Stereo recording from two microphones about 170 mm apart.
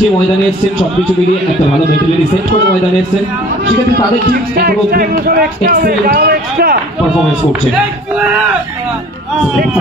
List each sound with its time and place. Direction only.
4.6 s speech: 60° right (ahead or behind)